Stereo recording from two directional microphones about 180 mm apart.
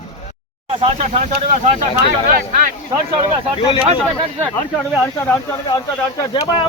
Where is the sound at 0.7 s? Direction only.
35° right (ahead or behind).